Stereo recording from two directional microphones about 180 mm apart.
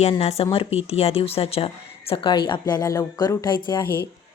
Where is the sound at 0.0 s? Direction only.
35° left (ahead or behind).